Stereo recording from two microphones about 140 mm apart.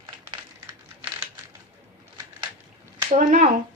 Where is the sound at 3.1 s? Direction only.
60° right (ahead or behind).